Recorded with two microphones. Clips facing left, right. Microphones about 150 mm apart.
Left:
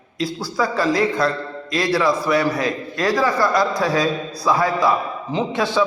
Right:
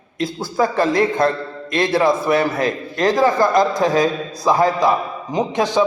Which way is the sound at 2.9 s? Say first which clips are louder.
Right 4 dB; 20° right (ahead or behind).